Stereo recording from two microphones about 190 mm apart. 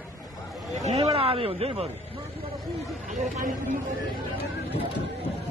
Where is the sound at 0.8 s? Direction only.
35° right (ahead or behind).